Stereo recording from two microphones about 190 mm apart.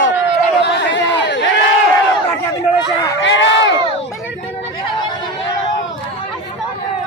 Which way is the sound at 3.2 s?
75° left (ahead or behind).